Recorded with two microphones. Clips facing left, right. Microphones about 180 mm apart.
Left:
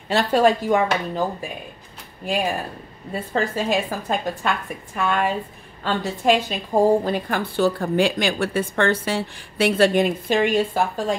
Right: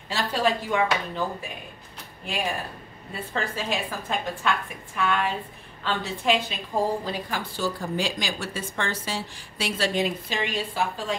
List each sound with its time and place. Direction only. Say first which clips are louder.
0.1 s speech: left 8 dB; 50° left (ahead or behind)
3.1 s a woman's voice: left 7 dB; 40° left (ahead or behind)